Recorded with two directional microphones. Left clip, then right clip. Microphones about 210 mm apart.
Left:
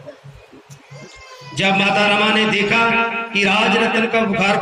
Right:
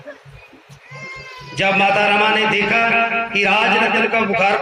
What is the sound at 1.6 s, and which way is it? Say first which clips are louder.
A man's voice: right 1 dB; 65° left (ahead or behind).